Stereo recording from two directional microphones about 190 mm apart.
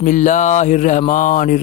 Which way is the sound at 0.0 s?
40° left (ahead or behind).